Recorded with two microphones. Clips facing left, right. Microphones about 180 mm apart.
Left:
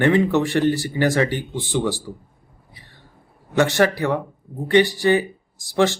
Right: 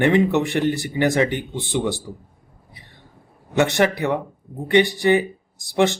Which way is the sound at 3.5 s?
20° right (ahead or behind).